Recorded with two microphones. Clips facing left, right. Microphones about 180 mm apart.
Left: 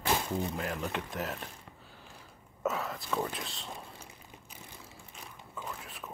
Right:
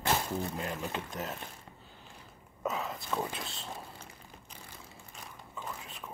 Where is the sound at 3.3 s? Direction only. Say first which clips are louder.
Even; centre (ahead or behind).